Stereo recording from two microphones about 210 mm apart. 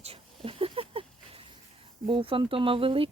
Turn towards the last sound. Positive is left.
turn(degrees=-25)  # may be behind; listen again after turning